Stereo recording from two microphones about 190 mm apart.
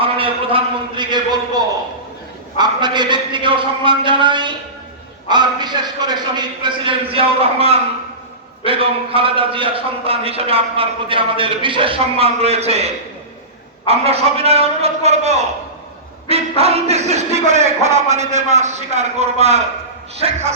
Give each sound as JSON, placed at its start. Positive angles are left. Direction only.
{"t": 0.0, "sound": "a man's voice", "side_deg": -30}